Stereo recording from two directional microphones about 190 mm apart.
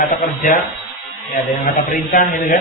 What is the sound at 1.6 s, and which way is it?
Speech, 45° left (ahead or behind).